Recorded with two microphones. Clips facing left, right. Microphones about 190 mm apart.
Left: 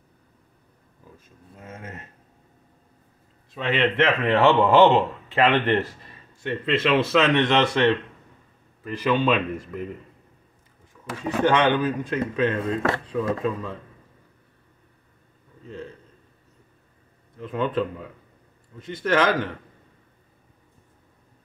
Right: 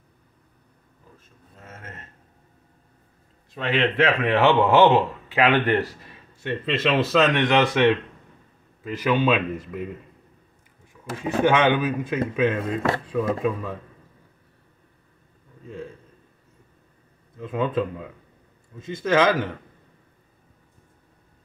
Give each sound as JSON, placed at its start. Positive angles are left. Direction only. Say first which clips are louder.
{"t": 1.6, "sound": "speech", "louder": "left 4 dB", "side_deg": 15}
{"t": 3.7, "sound": "a man's voice", "louder": "even", "side_deg": -5}
{"t": 7.2, "sound": "speech", "louder": "even", "side_deg": -15}
{"t": 11.2, "sound": "speech", "louder": "right 1 dB", "side_deg": -20}
{"t": 11.8, "sound": "speech", "louder": "even", "side_deg": -10}
{"t": 17.4, "sound": "speech", "louder": "right 1 dB", "side_deg": -10}
{"t": 19.2, "sound": "speech", "louder": "right 1 dB", "side_deg": -10}